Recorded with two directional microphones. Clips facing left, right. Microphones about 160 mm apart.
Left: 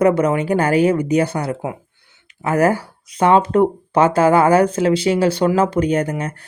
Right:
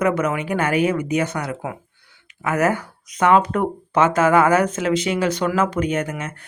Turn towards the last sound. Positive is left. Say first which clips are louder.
# left 5 dB
turn(degrees=35)  # may be behind; listen again after turning